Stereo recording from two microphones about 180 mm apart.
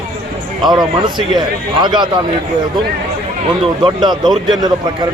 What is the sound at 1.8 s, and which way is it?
Speech, 25° right (ahead or behind).